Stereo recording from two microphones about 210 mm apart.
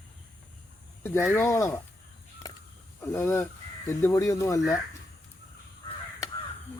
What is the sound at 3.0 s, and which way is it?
Speech, 10° left (ahead or behind).